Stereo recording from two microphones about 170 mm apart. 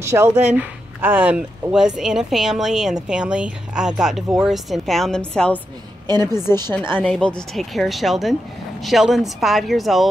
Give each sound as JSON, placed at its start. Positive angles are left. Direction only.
{"t": 0.0, "sound": "speech", "side_deg": -15}
{"t": 6.0, "sound": "a woman's voice", "side_deg": -25}
{"t": 7.0, "sound": "speech", "side_deg": 5}